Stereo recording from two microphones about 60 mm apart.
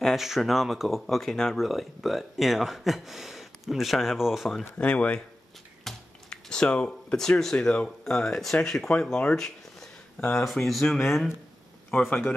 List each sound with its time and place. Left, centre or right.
0.0 s speech: centre
4.7 s speech: centre
5.9 s a sound: centre
7.5 s speech: centre